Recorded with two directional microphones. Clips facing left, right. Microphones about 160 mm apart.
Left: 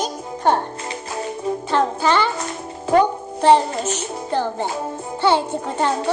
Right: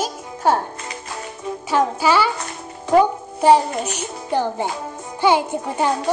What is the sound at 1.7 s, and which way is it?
Music, 10° right (ahead or behind).